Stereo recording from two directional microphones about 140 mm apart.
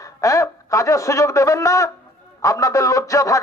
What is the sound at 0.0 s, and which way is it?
A man's voice, 20° left (ahead or behind).